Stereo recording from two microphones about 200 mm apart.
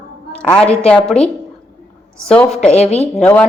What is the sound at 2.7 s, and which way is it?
Speech, 30° left (ahead or behind).